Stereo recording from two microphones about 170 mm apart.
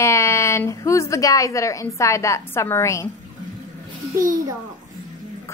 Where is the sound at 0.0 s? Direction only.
15° left (ahead or behind).